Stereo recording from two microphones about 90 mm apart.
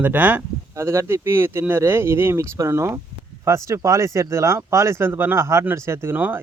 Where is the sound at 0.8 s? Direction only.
30° right (ahead or behind).